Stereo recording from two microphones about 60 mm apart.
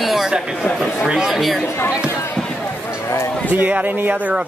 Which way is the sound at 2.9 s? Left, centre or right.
Left.